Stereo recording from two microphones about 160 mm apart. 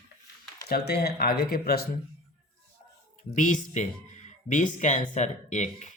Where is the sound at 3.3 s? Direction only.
50° left (ahead or behind).